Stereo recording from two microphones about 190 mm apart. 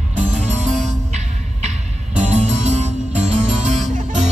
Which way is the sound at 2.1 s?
35° right (ahead or behind).